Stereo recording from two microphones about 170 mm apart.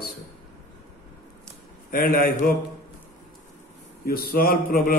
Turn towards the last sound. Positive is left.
turn(degrees=60)  # may be behind; listen again after turning